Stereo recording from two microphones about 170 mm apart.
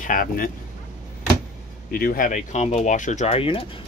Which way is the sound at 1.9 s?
55° left (ahead or behind).